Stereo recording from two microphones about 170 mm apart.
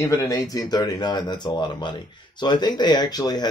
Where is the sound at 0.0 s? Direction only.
20° left (ahead or behind).